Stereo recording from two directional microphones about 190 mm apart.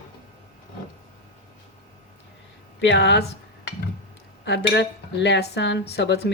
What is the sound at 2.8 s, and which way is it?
Cutlery, 65° left (ahead or behind).